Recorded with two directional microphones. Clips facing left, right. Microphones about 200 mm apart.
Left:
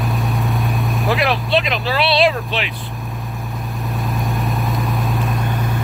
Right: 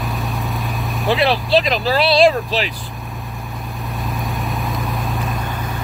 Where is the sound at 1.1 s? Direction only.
35° right (ahead or behind).